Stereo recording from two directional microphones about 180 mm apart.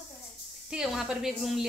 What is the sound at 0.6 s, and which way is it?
A woman's voice, 5° right (ahead or behind).